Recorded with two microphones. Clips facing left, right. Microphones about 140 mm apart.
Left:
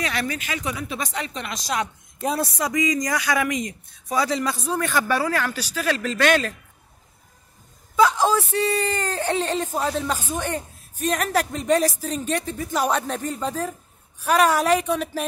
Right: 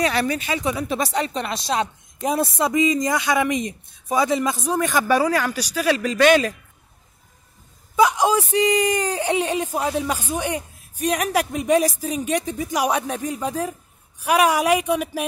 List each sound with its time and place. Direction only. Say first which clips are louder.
0.0 s speech: right 6 dB; 35° right (ahead or behind)
0.8 s speech: right 6 dB; 35° right (ahead or behind); by 6.5 s 10° right (ahead or behind)
7.9 s speech: right 1 dB; 15° right (ahead or behind)